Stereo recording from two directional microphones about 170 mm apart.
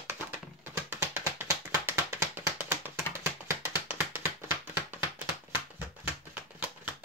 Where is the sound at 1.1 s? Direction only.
15° right (ahead or behind).